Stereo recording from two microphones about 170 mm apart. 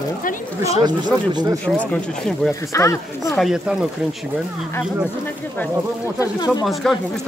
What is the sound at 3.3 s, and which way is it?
Speech, centre (ahead or behind).